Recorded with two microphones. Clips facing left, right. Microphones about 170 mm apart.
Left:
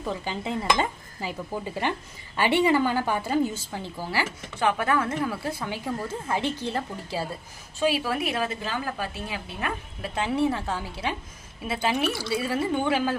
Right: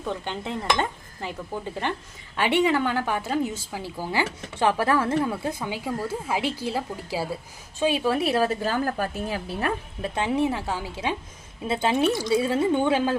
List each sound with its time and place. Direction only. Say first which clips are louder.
0.0 s cutlery: even; 5° left (ahead or behind)
3.7 s speech: right 1 dB; 5° right (ahead or behind)
4.1 s speech: right 3 dB; 25° right (ahead or behind)
7.8 s a woman's voice: right 2 dB; 20° right (ahead or behind); by 9.7 s 35° right (ahead or behind)
10.0 s a woman's voice: even; 20° right (ahead or behind)